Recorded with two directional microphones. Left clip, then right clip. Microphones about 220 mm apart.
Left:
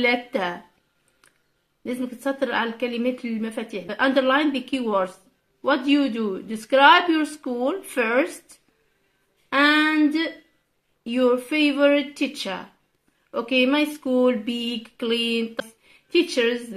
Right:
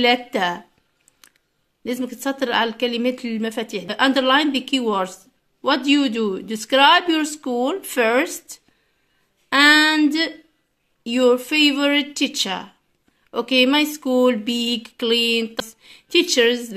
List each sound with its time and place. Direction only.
0.0 s speech: 35° right (ahead or behind)
1.9 s speech: 35° right (ahead or behind)
9.5 s a sound: 35° right (ahead or behind)
11.1 s speech: 40° right (ahead or behind)